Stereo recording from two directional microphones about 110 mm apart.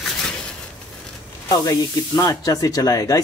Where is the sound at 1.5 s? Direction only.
35° left (ahead or behind).